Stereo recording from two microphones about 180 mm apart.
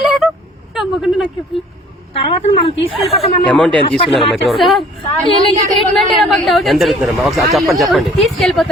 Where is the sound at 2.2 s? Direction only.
30° left (ahead or behind).